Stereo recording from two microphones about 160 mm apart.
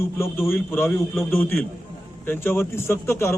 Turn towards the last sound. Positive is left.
turn(degrees=15)  # may be behind; listen again after turning